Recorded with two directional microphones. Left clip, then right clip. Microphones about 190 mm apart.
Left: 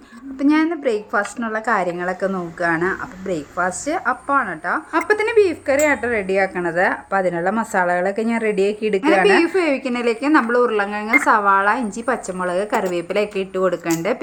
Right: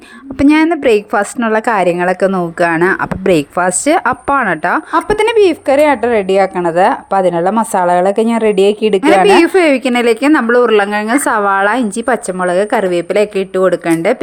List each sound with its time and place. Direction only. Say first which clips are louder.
0.3 s a woman's voice: right 8 dB; 45° right (ahead or behind)
4.9 s speech: right 5 dB; 35° right (ahead or behind)